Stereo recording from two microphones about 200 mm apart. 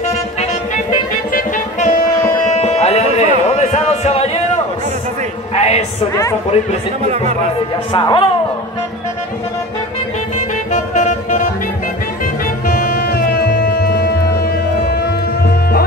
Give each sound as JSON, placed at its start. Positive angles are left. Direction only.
{"t": 1.3, "sound": "music", "side_deg": 40}
{"t": 5.5, "sound": "music", "side_deg": 30}
{"t": 7.9, "sound": "speech", "side_deg": 25}
{"t": 10.7, "sound": "music", "side_deg": 40}
{"t": 12.6, "sound": "music", "side_deg": 45}